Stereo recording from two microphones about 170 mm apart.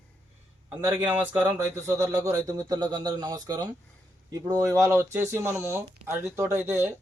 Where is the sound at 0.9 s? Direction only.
10° right (ahead or behind).